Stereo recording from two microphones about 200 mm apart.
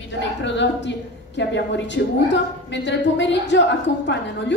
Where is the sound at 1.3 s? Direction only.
60° left (ahead or behind).